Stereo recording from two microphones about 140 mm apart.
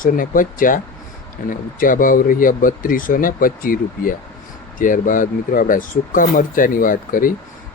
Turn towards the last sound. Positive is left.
turn(degrees=75)  # may be behind; listen again after turning